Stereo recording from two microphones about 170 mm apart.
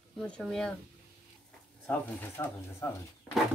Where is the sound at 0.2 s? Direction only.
5° left (ahead or behind).